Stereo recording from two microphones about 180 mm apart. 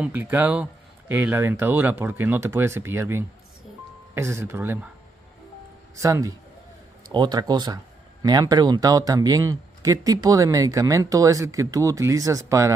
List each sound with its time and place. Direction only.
0.0 s speech: 10° right (ahead or behind)
5.9 s speech: 15° right (ahead or behind)